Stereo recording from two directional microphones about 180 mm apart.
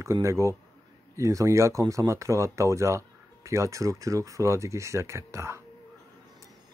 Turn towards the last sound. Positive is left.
turn(degrees=-15)  # may be behind; listen again after turning